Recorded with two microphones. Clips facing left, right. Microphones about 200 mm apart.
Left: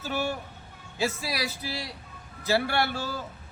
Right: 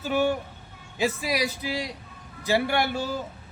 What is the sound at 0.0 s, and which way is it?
A man's voice, 15° right (ahead or behind).